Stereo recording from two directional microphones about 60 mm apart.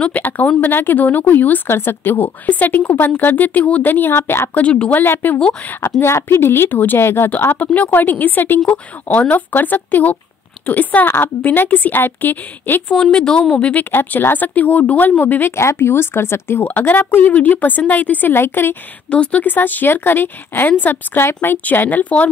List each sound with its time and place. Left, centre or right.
0.0 s a woman's voice: left
4.6 s a woman's voice: left
12.9 s a woman's voice: centre
13.7 s a woman's voice: left
15.5 s a woman's voice: left
18.3 s a woman's voice: left
19.0 s a woman's voice: left